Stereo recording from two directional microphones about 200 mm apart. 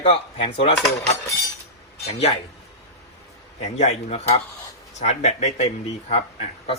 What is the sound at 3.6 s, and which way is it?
Speech, 35° left (ahead or behind).